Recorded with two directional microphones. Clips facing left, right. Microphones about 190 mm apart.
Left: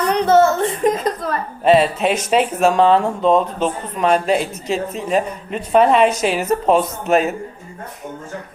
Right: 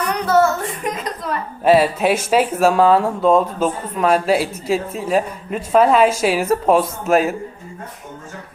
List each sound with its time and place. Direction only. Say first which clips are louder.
0.1 s a child's voice: left 3 dB; 25° left (ahead or behind)
1.6 s speech: even; 5° right (ahead or behind)